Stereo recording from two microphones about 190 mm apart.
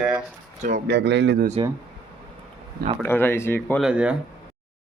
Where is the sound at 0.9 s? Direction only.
60° right (ahead or behind).